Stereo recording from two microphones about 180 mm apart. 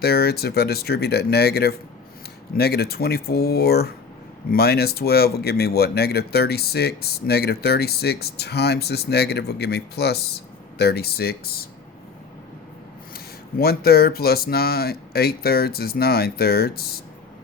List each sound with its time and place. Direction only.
0.0 s speech: 60° left (ahead or behind)
13.1 s speech: 60° left (ahead or behind)